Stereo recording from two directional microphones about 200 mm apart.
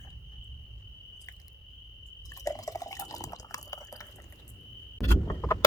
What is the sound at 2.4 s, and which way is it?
Drip, 15° left (ahead or behind).